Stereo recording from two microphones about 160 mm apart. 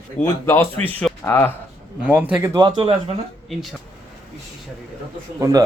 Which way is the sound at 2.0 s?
10° right (ahead or behind).